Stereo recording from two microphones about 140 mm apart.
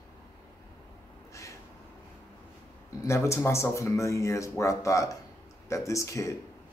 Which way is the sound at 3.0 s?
20° left (ahead or behind).